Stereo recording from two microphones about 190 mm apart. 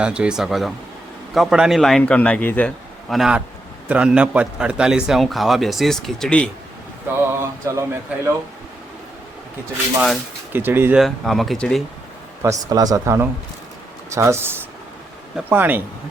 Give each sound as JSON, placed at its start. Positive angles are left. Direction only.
{"t": 0.0, "sound": "a man's voice", "side_deg": -5}
{"t": 7.3, "sound": "speech", "side_deg": -15}
{"t": 10.5, "sound": "speech", "side_deg": -10}
{"t": 11.0, "sound": "a man's voice", "side_deg": 0}
{"t": 12.4, "sound": "speech", "side_deg": -15}